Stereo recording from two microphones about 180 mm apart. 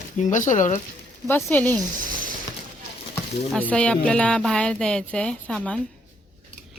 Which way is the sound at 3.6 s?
5° left (ahead or behind).